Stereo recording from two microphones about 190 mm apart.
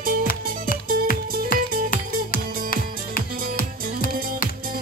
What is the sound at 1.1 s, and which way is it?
Music, 50° left (ahead or behind).